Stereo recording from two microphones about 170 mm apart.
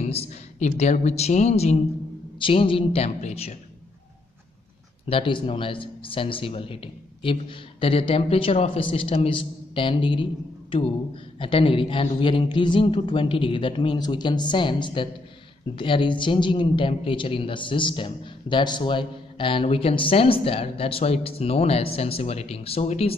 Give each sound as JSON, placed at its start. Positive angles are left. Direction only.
{"t": 0.0, "sound": "a woman's voice", "side_deg": 40}
{"t": 2.3, "sound": "a woman's voice", "side_deg": 30}
{"t": 5.1, "sound": "a woman's voice", "side_deg": 30}
{"t": 11.3, "sound": "a man's voice", "side_deg": 30}